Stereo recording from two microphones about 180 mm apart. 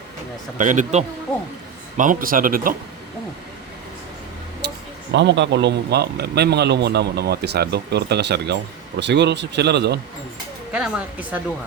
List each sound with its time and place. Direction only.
0.6 s speech: 45° right (ahead or behind)
4.6 s a sound: 70° right (ahead or behind)
5.1 s a man's voice: 80° right
10.7 s speech: 5° right (ahead or behind)